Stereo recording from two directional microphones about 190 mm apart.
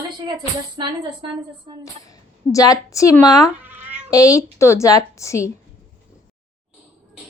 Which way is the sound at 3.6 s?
10° right (ahead or behind).